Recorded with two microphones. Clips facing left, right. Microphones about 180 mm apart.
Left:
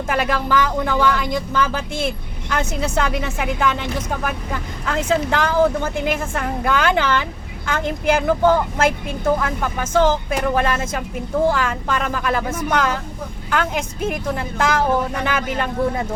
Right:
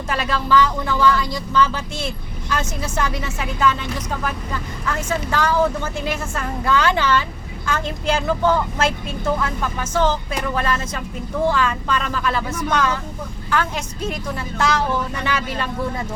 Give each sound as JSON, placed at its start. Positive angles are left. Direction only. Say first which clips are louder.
{"t": 0.1, "sound": "speech", "louder": "even", "side_deg": 55}